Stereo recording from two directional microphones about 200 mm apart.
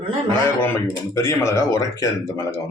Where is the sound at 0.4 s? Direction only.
10° left (ahead or behind).